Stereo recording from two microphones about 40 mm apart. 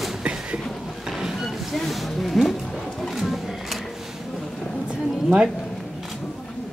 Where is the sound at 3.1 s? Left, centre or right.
Centre.